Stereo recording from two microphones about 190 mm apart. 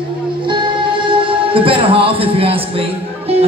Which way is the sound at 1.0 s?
30° right (ahead or behind).